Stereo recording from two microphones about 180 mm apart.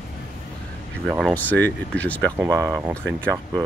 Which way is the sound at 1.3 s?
10° left (ahead or behind).